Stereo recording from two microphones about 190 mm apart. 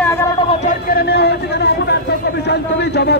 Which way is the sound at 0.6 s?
55° left (ahead or behind).